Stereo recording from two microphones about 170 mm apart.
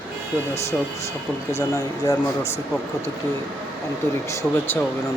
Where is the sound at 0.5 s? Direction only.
40° left (ahead or behind).